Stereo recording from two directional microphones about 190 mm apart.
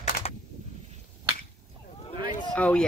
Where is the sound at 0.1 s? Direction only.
50° left (ahead or behind).